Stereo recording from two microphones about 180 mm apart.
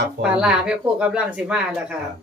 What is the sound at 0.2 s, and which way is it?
Speech, 5° right (ahead or behind).